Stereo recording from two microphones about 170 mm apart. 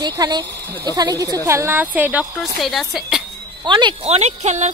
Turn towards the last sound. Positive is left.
turn(degrees=-45)  # may be behind; listen again after turning